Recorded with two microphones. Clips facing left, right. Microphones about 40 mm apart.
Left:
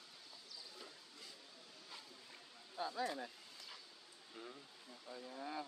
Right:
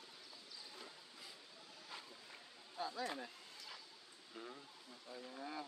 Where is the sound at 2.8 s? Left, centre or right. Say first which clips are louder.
Left 2 dB; centre.